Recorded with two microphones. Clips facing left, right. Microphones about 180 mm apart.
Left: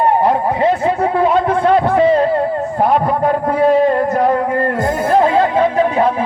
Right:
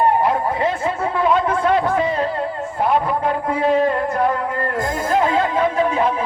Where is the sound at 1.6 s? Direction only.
30° left (ahead or behind).